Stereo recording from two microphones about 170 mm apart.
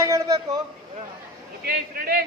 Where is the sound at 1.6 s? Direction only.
60° right (ahead or behind).